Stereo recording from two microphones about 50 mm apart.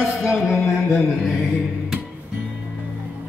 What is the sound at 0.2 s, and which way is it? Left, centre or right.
Music, centre.